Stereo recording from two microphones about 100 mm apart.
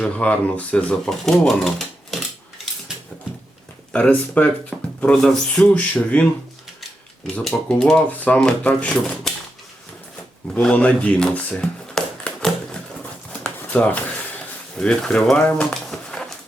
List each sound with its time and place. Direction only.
0.0 s speech: 10° left (ahead or behind)
1.2 s speech: 5° left (ahead or behind)
3.9 s speech: 15° left (ahead or behind)
7.3 s speech: 10° left (ahead or behind)
10.5 s speech: 10° left (ahead or behind)
13.4 s a sound: 15° left (ahead or behind)
14.8 s speech: 10° left (ahead or behind)